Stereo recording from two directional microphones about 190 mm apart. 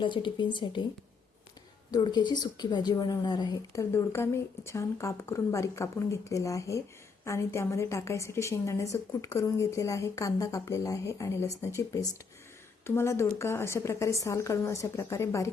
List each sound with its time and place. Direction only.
0.0 s speech: 25° left (ahead or behind)
1.9 s speech: 20° left (ahead or behind)